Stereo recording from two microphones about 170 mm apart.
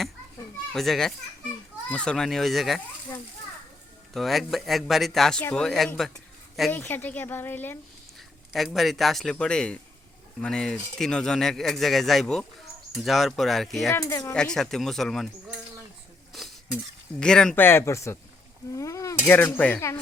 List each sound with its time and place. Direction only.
0.7 s speech: centre (ahead or behind)
4.1 s a woman's voice: centre (ahead or behind)
8.5 s speech: centre (ahead or behind)
13.9 s a woman's voice: 15° left (ahead or behind)
14.3 s speech: 5° left (ahead or behind)
16.3 s stir: centre (ahead or behind)
17.2 s a woman's voice: 5° left (ahead or behind)